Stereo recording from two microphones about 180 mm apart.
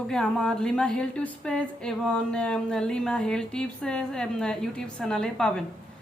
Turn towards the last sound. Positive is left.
turn(degrees=5)  # may be behind; listen again after turning